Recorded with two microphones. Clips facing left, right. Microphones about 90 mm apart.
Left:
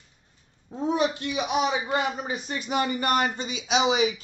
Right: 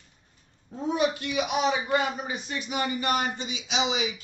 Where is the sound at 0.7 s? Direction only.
35° left (ahead or behind).